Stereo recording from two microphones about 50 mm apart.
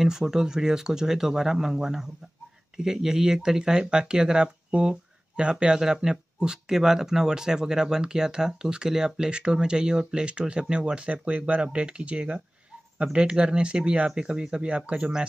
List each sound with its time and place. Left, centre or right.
0.0 s speech: centre